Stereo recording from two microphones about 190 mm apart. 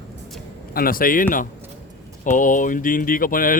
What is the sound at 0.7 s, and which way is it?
Speech, 50° left (ahead or behind).